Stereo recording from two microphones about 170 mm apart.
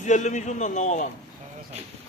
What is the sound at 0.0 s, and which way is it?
A man's voice, 45° left (ahead or behind).